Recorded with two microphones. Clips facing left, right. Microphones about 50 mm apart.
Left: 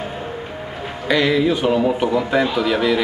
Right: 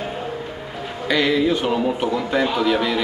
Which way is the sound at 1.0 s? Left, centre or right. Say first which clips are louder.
Left 2 dB; centre.